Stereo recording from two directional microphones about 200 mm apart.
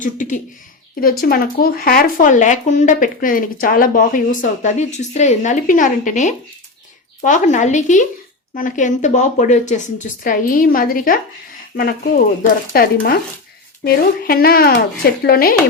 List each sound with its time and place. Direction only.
0.0 s speech: 40° left (ahead or behind)